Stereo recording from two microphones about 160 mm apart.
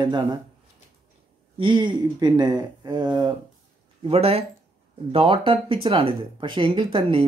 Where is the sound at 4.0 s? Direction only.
40° right (ahead or behind).